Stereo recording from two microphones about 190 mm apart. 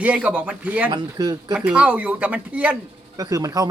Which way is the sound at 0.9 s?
20° right (ahead or behind).